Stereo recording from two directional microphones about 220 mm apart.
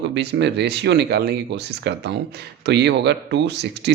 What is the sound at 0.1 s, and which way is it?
Speech, 50° right (ahead or behind).